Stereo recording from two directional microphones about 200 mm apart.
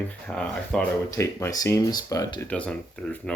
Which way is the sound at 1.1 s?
15° left (ahead or behind).